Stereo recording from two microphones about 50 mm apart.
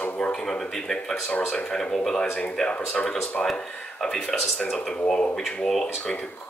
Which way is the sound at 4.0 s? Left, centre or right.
Centre.